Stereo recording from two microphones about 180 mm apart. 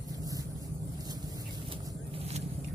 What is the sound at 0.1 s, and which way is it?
Vehicle, 20° right (ahead or behind).